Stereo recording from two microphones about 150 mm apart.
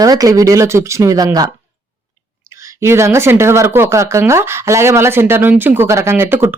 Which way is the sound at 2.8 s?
20° right (ahead or behind).